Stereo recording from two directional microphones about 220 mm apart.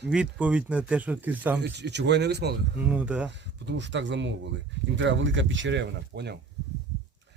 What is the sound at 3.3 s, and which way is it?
Speech, 55° right (ahead or behind).